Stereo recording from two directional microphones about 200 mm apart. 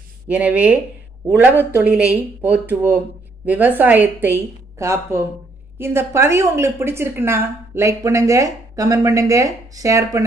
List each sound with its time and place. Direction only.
0.3 s a woman's voice: 5° right (ahead or behind)